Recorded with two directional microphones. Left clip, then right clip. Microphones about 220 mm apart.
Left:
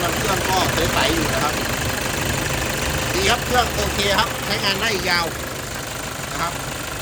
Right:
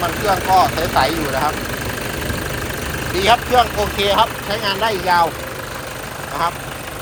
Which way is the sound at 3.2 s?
15° right (ahead or behind).